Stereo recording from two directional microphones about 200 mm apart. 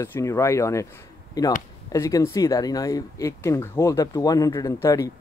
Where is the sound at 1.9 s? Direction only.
15° left (ahead or behind).